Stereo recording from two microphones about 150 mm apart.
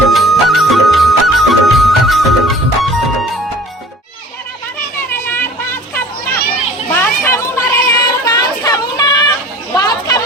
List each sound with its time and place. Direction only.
0.1 s music: centre (ahead or behind)
5.1 s a sound: 15° left (ahead or behind)
6.9 s chatter: 15° left (ahead or behind)